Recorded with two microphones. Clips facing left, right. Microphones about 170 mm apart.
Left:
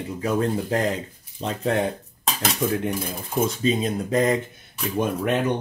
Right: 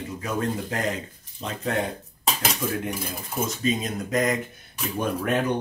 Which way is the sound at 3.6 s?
30° left (ahead or behind).